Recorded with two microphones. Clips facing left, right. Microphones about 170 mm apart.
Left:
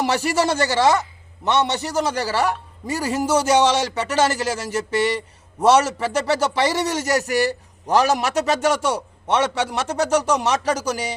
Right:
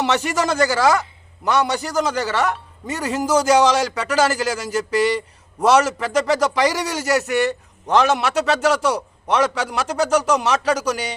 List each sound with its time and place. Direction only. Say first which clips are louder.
0.1 s a man's voice: even; 35° left (ahead or behind)